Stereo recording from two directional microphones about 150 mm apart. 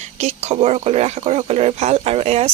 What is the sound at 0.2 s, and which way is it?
Speech, 45° right (ahead or behind).